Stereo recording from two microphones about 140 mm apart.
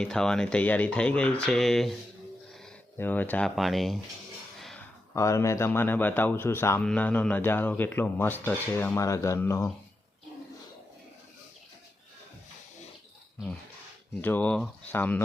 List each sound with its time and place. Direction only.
0.0 s speech: 5° left (ahead or behind)
3.0 s speech: 15° left (ahead or behind)
3.5 s speech: centre (ahead or behind)
4.6 s a sound: 5° left (ahead or behind)
5.1 s speech: 20° left (ahead or behind)
14.2 s speech: 15° left (ahead or behind)